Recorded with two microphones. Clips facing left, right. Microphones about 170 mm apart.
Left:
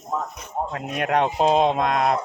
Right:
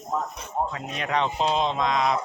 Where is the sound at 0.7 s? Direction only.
55° left (ahead or behind).